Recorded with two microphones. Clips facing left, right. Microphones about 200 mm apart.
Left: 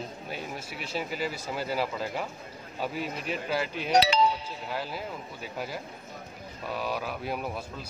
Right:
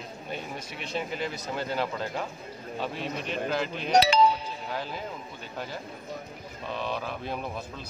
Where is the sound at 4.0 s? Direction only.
50° right (ahead or behind).